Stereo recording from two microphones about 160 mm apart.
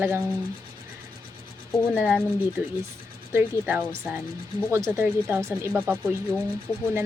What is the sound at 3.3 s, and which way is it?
Speech, 10° right (ahead or behind).